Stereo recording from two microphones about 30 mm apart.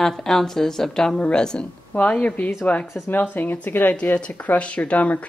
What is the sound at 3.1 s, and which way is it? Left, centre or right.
Speech, left.